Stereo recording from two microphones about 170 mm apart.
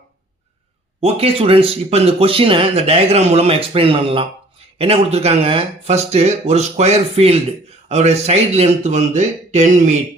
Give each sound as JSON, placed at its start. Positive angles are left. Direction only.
{"t": 1.0, "sound": "speech", "side_deg": -35}